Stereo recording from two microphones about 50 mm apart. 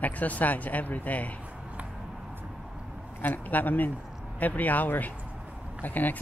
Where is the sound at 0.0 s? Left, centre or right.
Left.